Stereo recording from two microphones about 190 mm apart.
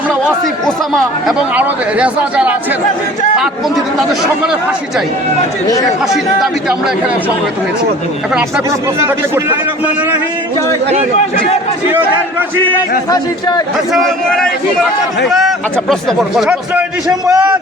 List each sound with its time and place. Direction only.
1.3 s speech: 5° right (ahead or behind)
6.4 s speech: 5° right (ahead or behind)
9.0 s a man's voice: 15° right (ahead or behind)
13.1 s a man's voice: 20° left (ahead or behind)
13.9 s speech: centre (ahead or behind)
17.2 s a man's voice: 15° right (ahead or behind)